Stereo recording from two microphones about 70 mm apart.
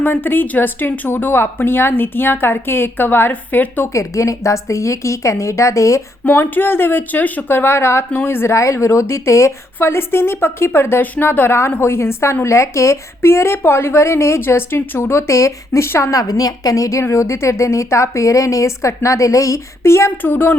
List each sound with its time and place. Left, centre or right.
0.0 s a woman's voice: left
3.9 s a woman's voice: left
6.2 s a woman's voice: left
16.1 s a woman's voice: left
20.2 s speech: left